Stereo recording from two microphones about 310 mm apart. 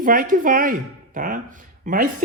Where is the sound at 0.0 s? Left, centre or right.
Right.